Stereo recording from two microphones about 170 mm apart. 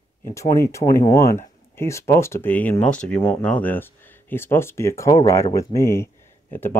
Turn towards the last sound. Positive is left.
turn(degrees=15)  # may be behind; listen again after turning